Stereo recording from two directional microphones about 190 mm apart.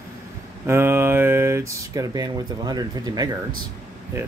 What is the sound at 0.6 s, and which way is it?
Speech, 10° right (ahead or behind).